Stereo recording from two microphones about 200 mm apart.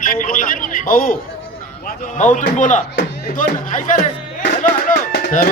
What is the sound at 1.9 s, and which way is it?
Speech, 45° left (ahead or behind).